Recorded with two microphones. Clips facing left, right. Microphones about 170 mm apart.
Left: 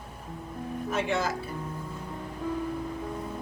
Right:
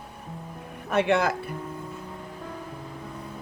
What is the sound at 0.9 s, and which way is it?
Speech, 65° right (ahead or behind).